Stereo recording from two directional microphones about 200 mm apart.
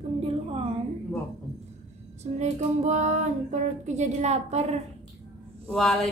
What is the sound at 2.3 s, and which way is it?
Female singing, 35° right (ahead or behind).